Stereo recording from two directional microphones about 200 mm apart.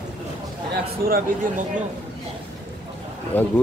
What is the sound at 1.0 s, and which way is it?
Speech, 45° right (ahead or behind).